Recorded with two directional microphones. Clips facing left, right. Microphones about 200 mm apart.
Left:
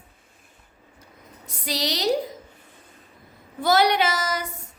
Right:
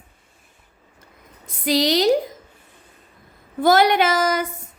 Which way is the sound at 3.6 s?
50° right (ahead or behind).